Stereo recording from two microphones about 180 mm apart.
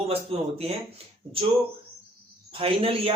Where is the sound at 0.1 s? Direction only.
35° right (ahead or behind).